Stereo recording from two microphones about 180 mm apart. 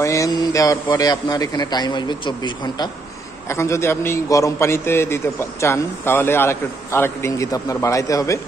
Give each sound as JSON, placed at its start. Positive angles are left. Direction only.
{"t": 0.0, "sound": "a man's voice", "side_deg": 15}